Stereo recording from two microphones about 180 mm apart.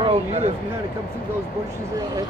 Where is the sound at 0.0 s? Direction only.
35° right (ahead or behind).